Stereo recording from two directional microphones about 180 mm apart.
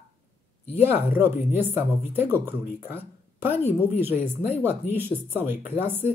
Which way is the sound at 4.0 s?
10° right (ahead or behind).